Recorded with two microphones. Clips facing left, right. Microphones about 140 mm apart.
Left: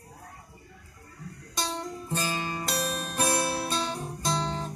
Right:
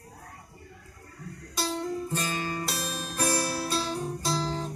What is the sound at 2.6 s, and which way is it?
Music, centre (ahead or behind).